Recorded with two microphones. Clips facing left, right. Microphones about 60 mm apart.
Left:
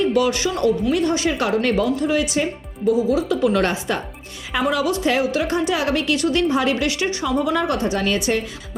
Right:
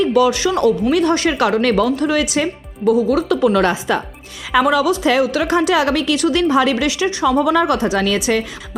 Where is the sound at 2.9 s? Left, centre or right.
Right.